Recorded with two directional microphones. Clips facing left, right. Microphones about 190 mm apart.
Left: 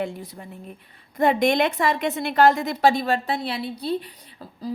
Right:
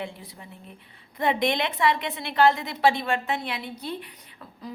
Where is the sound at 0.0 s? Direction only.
45° left (ahead or behind).